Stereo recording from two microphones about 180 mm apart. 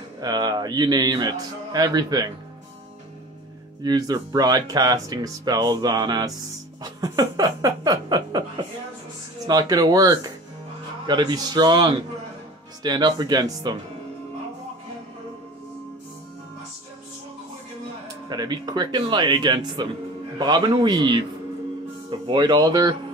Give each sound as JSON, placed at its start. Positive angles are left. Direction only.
{"t": 0.2, "sound": "speech", "side_deg": -20}
{"t": 3.8, "sound": "speech", "side_deg": -20}
{"t": 18.3, "sound": "speech", "side_deg": -20}
{"t": 22.2, "sound": "speech", "side_deg": -25}